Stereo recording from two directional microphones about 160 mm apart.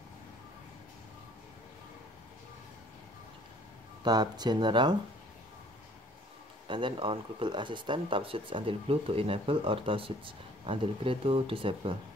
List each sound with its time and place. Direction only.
4.0 s speech: 25° right (ahead or behind)
6.7 s speech: 30° right (ahead or behind)